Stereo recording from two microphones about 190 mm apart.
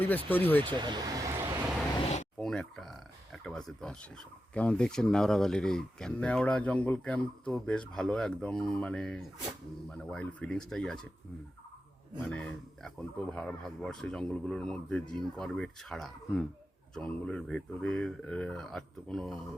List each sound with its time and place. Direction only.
0.3 s speech: 10° left (ahead or behind)
0.7 s vehicle: 25° right (ahead or behind)
2.4 s speech: 5° left (ahead or behind)
12.2 s speech: 5° left (ahead or behind)